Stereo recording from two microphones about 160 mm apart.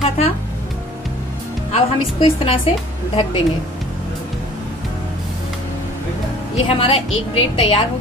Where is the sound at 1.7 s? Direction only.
40° left (ahead or behind).